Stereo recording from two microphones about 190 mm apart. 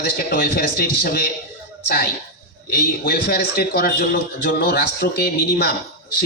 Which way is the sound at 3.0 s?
55° left (ahead or behind).